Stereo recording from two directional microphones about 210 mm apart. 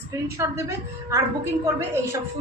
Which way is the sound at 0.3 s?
15° right (ahead or behind).